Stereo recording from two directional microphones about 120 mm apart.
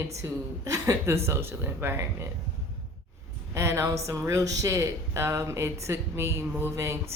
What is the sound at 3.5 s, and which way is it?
Speech, 25° right (ahead or behind).